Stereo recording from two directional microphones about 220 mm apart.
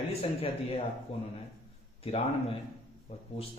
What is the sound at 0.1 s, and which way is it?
Speech, 25° left (ahead or behind).